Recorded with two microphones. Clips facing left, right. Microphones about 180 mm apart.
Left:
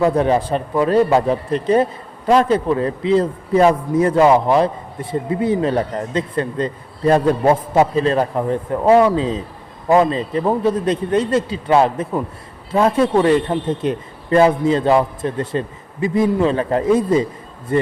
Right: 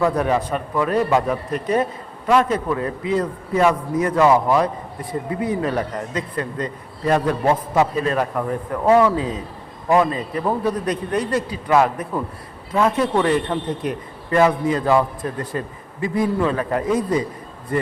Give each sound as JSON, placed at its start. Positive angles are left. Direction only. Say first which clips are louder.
{"t": 0.0, "sound": "a man's voice", "louder": "left 4 dB", "side_deg": 30}